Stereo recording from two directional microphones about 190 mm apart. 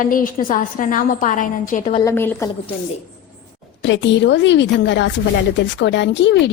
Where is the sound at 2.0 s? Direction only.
15° left (ahead or behind).